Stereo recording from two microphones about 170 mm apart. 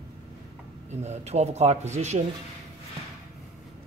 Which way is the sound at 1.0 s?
40° right (ahead or behind).